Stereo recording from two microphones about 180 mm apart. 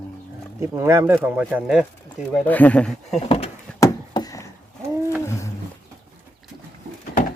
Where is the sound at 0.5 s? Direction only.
15° right (ahead or behind).